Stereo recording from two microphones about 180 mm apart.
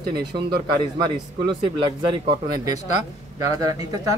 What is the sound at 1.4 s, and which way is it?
Speech, 25° right (ahead or behind).